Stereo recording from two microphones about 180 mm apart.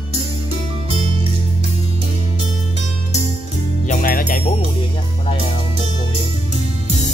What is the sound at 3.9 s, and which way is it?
Music, 50° left (ahead or behind).